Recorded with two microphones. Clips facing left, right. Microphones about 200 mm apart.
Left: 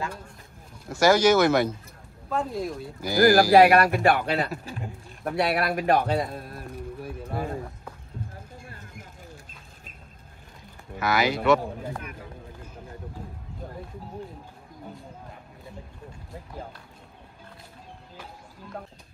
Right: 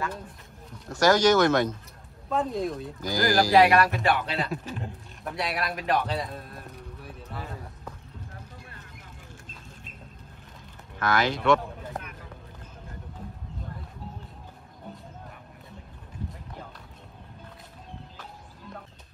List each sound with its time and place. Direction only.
0.8 s speech: 10° left (ahead or behind)
3.5 s speech: 50° left (ahead or behind)
4.5 s speech: 5° left (ahead or behind)
5.2 s speech: 55° left (ahead or behind)
7.2 s a sound: 50° left (ahead or behind)
11.0 s speech: 10° left (ahead or behind)